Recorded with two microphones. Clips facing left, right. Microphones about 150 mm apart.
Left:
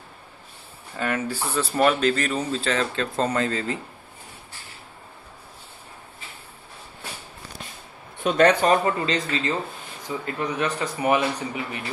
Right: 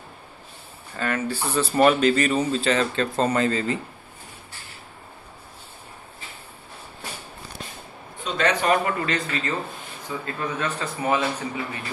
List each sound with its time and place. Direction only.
0.9 s speech: 10° left (ahead or behind)
8.2 s speech: 55° left (ahead or behind)
8.6 s a man's voice: 25° left (ahead or behind)